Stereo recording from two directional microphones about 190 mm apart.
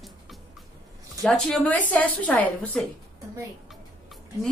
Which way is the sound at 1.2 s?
Centre (ahead or behind).